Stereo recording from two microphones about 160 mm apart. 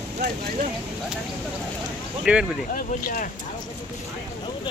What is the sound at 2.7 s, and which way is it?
Speech, 60° left (ahead or behind).